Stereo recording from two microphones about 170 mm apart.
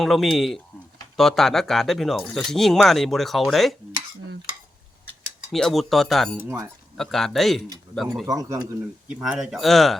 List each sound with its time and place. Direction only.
0.0 s speech: centre (ahead or behind)
5.5 s speech: centre (ahead or behind)
8.3 s speech: 20° right (ahead or behind)
9.0 s speech: 5° right (ahead or behind)